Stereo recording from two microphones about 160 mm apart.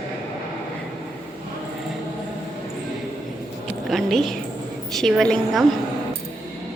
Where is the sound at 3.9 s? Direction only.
Centre (ahead or behind).